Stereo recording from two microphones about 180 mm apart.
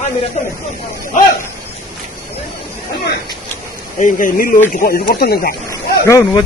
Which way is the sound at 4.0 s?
45° left (ahead or behind).